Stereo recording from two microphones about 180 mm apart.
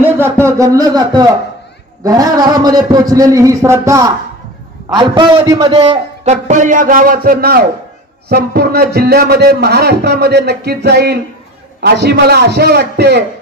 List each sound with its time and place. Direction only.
0.2 s a man's voice: 15° right (ahead or behind); by 13.2 s 65° right (ahead or behind)